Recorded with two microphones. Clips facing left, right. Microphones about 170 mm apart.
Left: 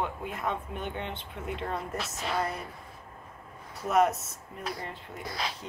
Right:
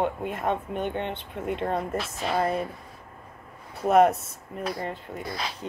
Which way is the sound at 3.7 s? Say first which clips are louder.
Right 6 dB; 60° right (ahead or behind).